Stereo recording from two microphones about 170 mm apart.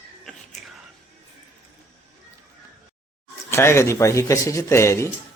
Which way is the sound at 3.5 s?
15° left (ahead or behind).